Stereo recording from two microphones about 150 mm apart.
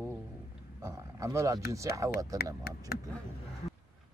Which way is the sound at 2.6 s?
90° left.